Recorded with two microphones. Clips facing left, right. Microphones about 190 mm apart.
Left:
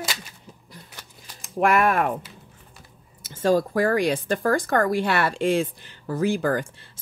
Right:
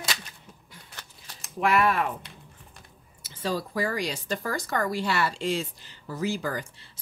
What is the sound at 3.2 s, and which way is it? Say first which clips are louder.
Speech: left 10 dB; 50° left (ahead or behind).